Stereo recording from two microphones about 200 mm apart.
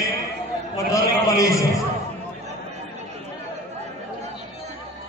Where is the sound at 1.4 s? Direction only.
15° left (ahead or behind).